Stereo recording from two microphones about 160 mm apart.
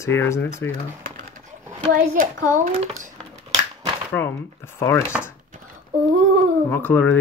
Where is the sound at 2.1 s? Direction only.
50° right (ahead or behind).